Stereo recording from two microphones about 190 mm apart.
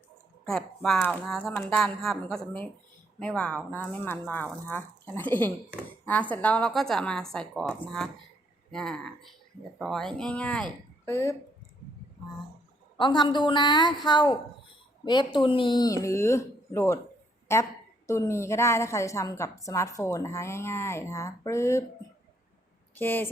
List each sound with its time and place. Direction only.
0.4 s a woman's voice: centre (ahead or behind)
13.0 s a woman's voice: 25° left (ahead or behind)
23.0 s a woman's voice: 10° left (ahead or behind)